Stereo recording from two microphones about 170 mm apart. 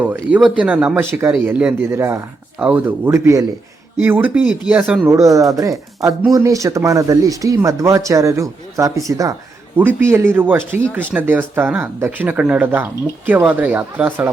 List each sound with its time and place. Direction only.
0.0 s speech: 10° right (ahead or behind)
5.1 s speech: 20° right (ahead or behind)